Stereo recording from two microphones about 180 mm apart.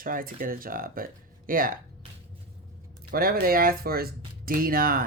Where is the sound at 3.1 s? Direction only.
55° right (ahead or behind).